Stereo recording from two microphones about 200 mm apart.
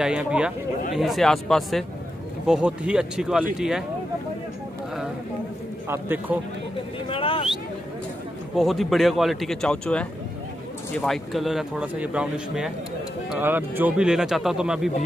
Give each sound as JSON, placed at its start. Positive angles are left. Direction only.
{"t": 0.0, "sound": "speech", "side_deg": -5}
{"t": 5.9, "sound": "a man's voice", "side_deg": -10}
{"t": 7.1, "sound": "a sound", "side_deg": 25}
{"t": 8.5, "sound": "speech", "side_deg": 0}